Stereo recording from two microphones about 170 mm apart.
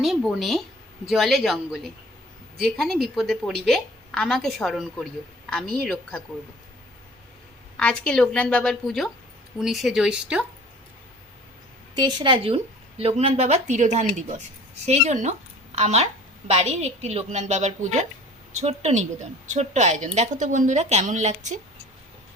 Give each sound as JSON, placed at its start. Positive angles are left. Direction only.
{"t": 0.0, "sound": "a woman's voice", "side_deg": 0}
{"t": 7.8, "sound": "a woman's voice", "side_deg": 5}
{"t": 11.9, "sound": "a woman's voice", "side_deg": -25}